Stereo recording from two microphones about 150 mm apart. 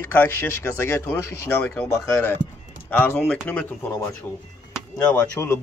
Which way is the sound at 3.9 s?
20° left (ahead or behind).